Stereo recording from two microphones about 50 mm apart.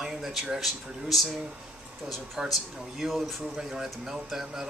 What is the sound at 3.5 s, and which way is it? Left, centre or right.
Speech, centre.